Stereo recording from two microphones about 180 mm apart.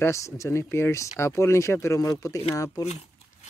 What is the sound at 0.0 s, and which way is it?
Speech, 15° left (ahead or behind).